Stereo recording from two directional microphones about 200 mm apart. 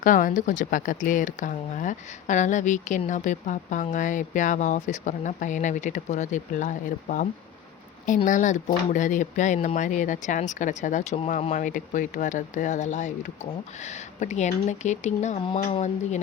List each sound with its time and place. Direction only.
0.0 s speech: 40° left (ahead or behind)